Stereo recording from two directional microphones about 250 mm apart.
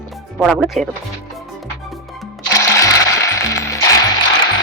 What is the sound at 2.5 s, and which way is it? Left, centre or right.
Music, centre.